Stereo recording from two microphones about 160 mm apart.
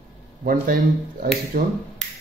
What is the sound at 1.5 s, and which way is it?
Speech, 60° right (ahead or behind).